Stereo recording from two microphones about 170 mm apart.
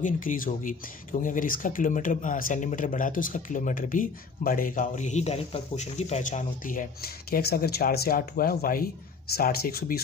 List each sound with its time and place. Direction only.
0.0 s speech: 50° left (ahead or behind)